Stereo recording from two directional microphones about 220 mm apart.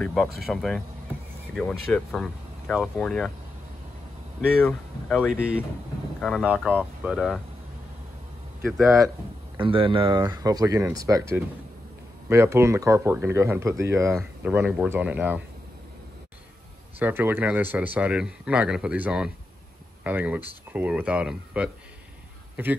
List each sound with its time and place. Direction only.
0.0 s speech: centre (ahead or behind)
4.5 s speech: 5° left (ahead or behind)
8.6 s speech: centre (ahead or behind)
9.6 s speech: 25° right (ahead or behind); by 15.4 s 5° right (ahead or behind)
17.0 s speech: 10° right (ahead or behind)